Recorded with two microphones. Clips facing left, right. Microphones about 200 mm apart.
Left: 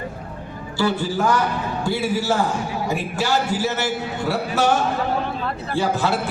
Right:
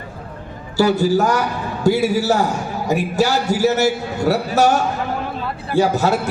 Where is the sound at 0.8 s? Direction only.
40° right (ahead or behind).